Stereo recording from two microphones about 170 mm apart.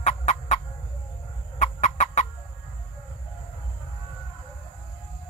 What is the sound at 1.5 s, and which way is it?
Fowl, 45° left (ahead or behind).